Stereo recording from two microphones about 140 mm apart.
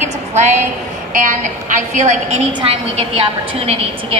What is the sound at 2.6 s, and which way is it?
A woman's voice, 45° right (ahead or behind).